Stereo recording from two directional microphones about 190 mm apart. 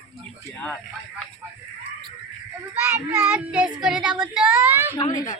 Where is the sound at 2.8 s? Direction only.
10° right (ahead or behind).